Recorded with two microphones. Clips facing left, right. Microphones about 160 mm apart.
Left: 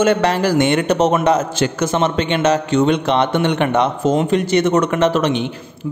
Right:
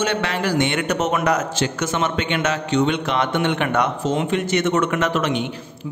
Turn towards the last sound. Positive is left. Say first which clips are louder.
# left 5 dB
turn(degrees=35)  # may be behind; listen again after turning